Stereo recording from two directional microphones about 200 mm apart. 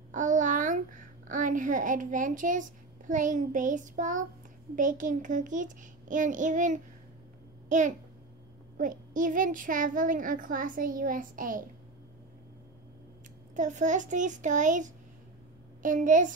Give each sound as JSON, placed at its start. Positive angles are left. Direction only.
{"t": 0.1, "sound": "a child's voice", "side_deg": -40}
{"t": 13.6, "sound": "a child's voice", "side_deg": -40}